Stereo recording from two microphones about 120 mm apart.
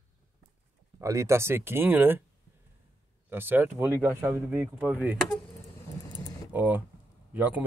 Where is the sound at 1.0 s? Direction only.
25° right (ahead or behind).